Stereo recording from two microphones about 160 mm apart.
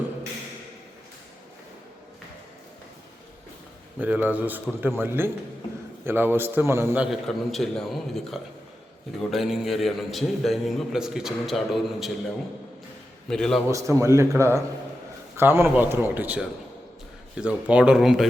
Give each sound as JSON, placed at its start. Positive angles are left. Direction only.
{"t": 4.0, "sound": "a man's voice", "side_deg": -10}
{"t": 7.3, "sound": "a man's voice", "side_deg": 5}
{"t": 13.3, "sound": "a man's voice", "side_deg": 5}
{"t": 13.7, "sound": "a man's voice", "side_deg": -20}